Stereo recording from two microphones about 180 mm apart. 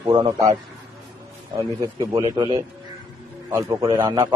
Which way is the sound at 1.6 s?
20° right (ahead or behind).